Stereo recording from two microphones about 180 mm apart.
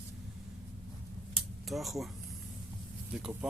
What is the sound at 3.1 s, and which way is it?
Speech, 5° right (ahead or behind).